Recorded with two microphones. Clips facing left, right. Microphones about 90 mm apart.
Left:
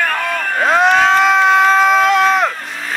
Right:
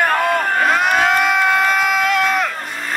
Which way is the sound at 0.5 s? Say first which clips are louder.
Left 8 dB; 25° left (ahead or behind).